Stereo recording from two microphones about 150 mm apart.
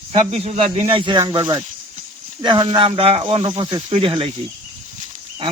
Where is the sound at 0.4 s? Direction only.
45° right (ahead or behind).